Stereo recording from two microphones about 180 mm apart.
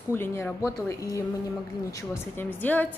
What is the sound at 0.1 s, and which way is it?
A woman's voice, 15° left (ahead or behind).